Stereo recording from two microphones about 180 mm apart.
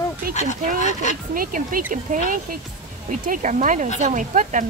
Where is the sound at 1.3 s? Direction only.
50° right (ahead or behind).